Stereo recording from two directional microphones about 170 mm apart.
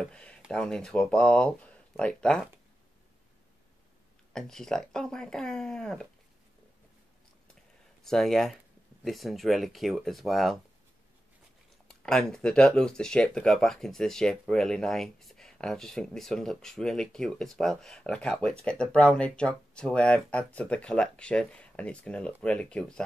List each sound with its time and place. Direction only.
0.0 s speech: 5° left (ahead or behind)
4.3 s speech: 5° left (ahead or behind)
8.0 s speech: centre (ahead or behind)
11.9 s speech: 5° left (ahead or behind)